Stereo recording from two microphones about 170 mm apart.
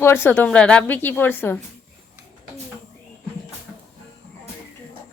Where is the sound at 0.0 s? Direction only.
15° left (ahead or behind).